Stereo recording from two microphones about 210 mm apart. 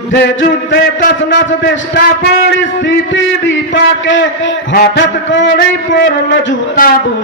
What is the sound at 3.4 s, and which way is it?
A man's voice, 60° left (ahead or behind).